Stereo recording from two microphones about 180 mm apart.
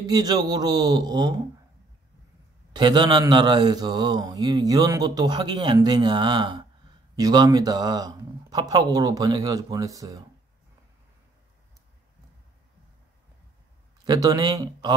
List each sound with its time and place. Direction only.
0.0 s speech: 20° right (ahead or behind)
2.7 s speech: 25° right (ahead or behind)
14.0 s speech: 20° right (ahead or behind)